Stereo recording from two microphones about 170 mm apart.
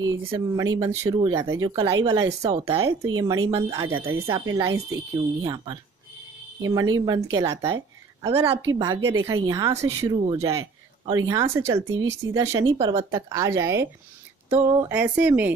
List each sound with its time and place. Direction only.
0.0 s speech: 25° right (ahead or behind)
2.8 s speech: 15° right (ahead or behind)
8.3 s a woman's voice: 35° right (ahead or behind)
8.6 s speech: 20° right (ahead or behind)